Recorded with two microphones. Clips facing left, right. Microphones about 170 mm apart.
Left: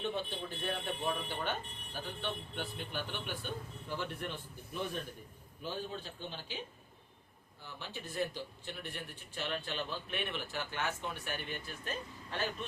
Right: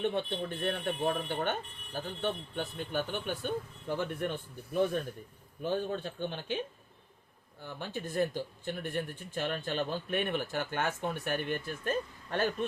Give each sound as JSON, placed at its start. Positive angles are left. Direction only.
{"t": 0.0, "sound": "a man's voice", "side_deg": -60}
{"t": 7.6, "sound": "speech", "side_deg": -50}